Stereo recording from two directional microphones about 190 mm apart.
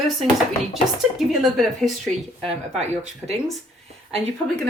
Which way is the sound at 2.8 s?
35° right (ahead or behind).